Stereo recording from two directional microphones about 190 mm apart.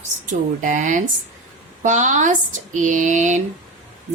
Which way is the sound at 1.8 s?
40° right (ahead or behind).